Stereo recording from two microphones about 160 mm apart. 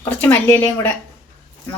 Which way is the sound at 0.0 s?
10° left (ahead or behind).